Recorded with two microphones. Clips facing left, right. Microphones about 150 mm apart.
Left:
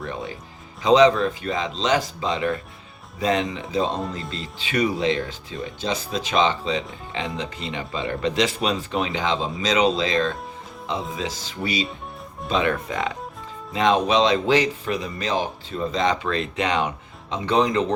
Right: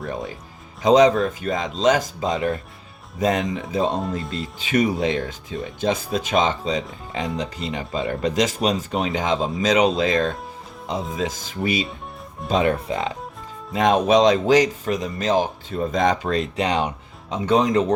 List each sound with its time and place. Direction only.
0.8 s speech: 45° right (ahead or behind)
4.0 s speech: centre (ahead or behind)
4.5 s speech: 45° right (ahead or behind)
12.7 s speech: 30° right (ahead or behind)
13.7 s speech: 45° right (ahead or behind)